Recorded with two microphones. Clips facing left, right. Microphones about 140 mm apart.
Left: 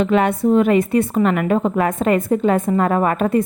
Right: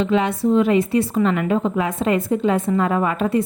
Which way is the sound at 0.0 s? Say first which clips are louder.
Left 3 dB; 55° left (ahead or behind).